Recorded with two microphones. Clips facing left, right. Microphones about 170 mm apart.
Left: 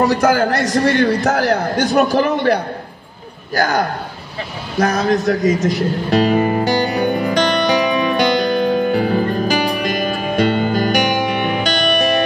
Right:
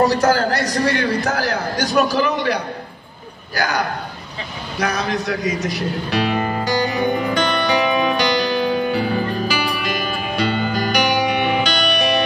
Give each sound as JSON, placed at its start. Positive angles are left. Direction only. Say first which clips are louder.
{"t": 0.2, "sound": "a man's voice", "louder": "left 2 dB", "side_deg": 55}
{"t": 0.7, "sound": "a man's voice", "louder": "left 4 dB", "side_deg": 25}
{"t": 0.9, "sound": "a man's voice", "louder": "left 5 dB", "side_deg": 50}
{"t": 7.6, "sound": "music", "louder": "left 2 dB", "side_deg": 50}